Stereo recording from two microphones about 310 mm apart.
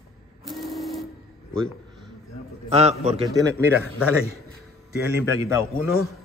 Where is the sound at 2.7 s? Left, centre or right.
Right.